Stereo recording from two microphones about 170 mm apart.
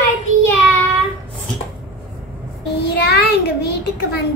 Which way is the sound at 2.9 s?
80° left.